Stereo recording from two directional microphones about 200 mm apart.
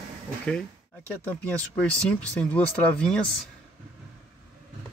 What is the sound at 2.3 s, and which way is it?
Speech, 5° left (ahead or behind).